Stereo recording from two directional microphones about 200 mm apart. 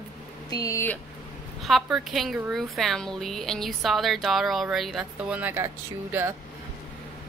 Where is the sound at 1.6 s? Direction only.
Centre (ahead or behind).